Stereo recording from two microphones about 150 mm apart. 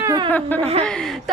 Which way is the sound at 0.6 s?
45° right (ahead or behind).